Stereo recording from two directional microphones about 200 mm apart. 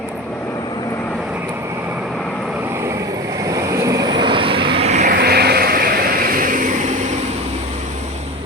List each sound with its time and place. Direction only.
3.4 s vehicle: 15° right (ahead or behind); by 5.1 s 35° right (ahead or behind)
5.1 s vehicle: 50° right (ahead or behind)